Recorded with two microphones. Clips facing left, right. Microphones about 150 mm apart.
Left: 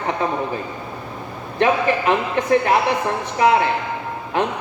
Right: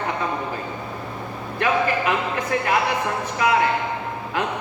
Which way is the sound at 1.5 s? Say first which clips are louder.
Left 4 dB; 30° left (ahead or behind).